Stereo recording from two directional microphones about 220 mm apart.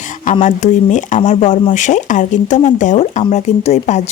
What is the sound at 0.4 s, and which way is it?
Speech, 35° left (ahead or behind).